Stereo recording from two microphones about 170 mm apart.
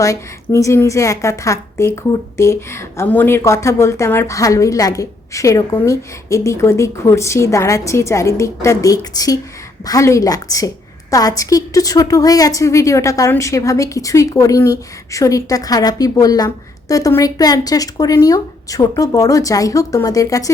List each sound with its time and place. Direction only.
0.0 s a woman's voice: 20° left (ahead or behind)